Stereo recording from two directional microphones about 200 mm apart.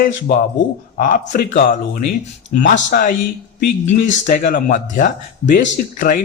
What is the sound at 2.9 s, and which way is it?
A man's voice, 45° left (ahead or behind).